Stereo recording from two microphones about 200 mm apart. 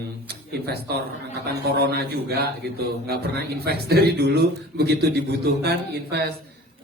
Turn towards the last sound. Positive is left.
turn(degrees=-55)  # may be behind; listen again after turning